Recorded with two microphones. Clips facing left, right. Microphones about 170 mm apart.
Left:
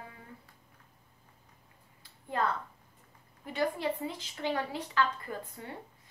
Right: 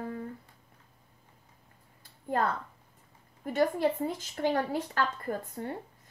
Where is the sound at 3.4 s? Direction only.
45° right (ahead or behind).